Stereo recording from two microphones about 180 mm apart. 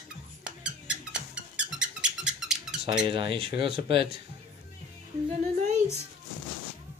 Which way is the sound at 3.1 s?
30° right (ahead or behind).